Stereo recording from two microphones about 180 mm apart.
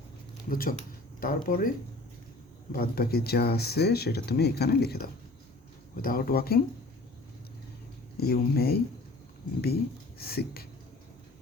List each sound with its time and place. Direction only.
0.4 s speech: 50° left (ahead or behind)
2.7 s speech: 60° left (ahead or behind)
8.2 s speech: 60° left (ahead or behind)
10.2 s speech: 60° left (ahead or behind)